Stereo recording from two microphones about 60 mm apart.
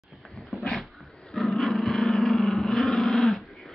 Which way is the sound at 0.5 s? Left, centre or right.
Centre.